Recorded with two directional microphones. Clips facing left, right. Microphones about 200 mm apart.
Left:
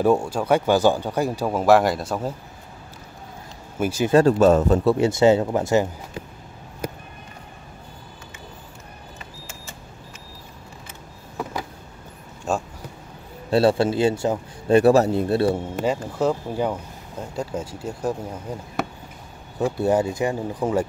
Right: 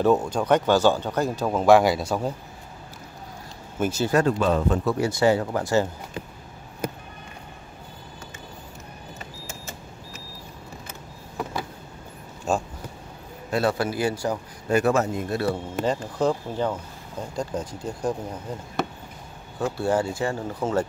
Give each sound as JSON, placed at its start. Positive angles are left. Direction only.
{"t": 0.0, "sound": "speech", "side_deg": 10}
{"t": 3.7, "sound": "speech", "side_deg": 10}
{"t": 4.1, "sound": "a man's voice", "side_deg": 35}
{"t": 4.9, "sound": "a man's voice", "side_deg": 25}
{"t": 12.5, "sound": "a sound", "side_deg": 0}
{"t": 13.5, "sound": "a man's voice", "side_deg": 30}
{"t": 15.8, "sound": "speech", "side_deg": 5}
{"t": 19.6, "sound": "speech", "side_deg": 20}